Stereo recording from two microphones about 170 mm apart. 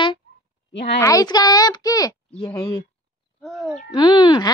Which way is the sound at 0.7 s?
90° left.